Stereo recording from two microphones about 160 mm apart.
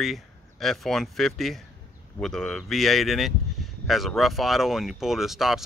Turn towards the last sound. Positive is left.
turn(degrees=0)  # may be behind; listen again after turning